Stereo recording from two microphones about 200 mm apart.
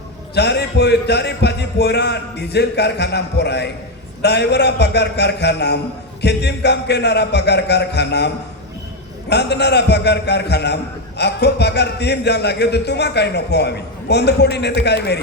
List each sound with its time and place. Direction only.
0.3 s speech: 55° left (ahead or behind)
9.3 s speech: 55° left (ahead or behind)